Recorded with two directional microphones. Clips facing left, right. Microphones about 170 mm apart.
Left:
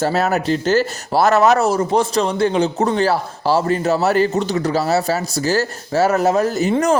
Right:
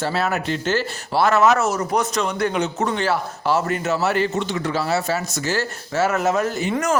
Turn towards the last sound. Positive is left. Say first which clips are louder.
# left 5 dB
turn(degrees=30)  # may be behind; listen again after turning